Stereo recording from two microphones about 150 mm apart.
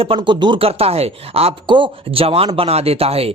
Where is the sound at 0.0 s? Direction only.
35° right (ahead or behind).